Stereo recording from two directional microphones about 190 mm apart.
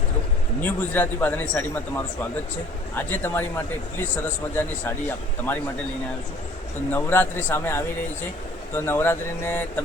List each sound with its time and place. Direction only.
0.6 s speech: 10° left (ahead or behind)
4.5 s speech: 10° left (ahead or behind)
6.9 s speech: 10° left (ahead or behind)